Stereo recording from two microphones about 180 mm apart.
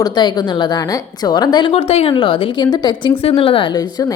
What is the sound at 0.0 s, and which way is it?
A woman's voice, 25° left (ahead or behind).